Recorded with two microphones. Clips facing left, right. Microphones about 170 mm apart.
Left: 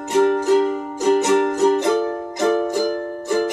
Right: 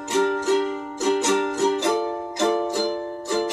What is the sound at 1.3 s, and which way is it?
Music, 55° left (ahead or behind).